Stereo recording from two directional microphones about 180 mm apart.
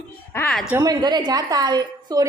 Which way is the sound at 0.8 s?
20° right (ahead or behind).